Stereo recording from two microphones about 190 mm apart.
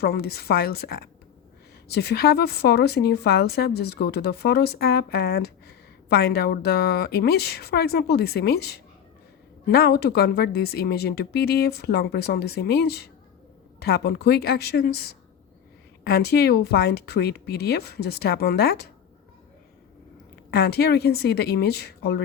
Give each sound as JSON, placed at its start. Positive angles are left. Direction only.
{"t": 0.0, "sound": "a woman's voice", "side_deg": 55}
{"t": 20.5, "sound": "a woman's voice", "side_deg": 55}